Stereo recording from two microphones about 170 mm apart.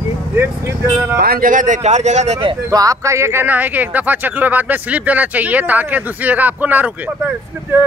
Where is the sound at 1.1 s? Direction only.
65° right (ahead or behind); by 2.5 s 40° right (ahead or behind).